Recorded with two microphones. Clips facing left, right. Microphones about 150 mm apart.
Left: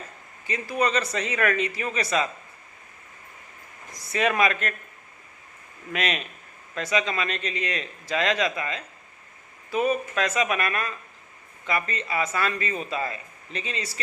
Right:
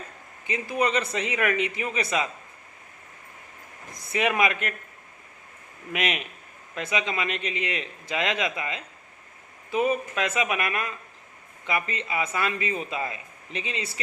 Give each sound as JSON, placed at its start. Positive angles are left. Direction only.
{"t": 0.4, "sound": "a man's voice", "side_deg": -20}
{"t": 4.1, "sound": "a man's voice", "side_deg": -15}
{"t": 5.9, "sound": "a man's voice", "side_deg": -15}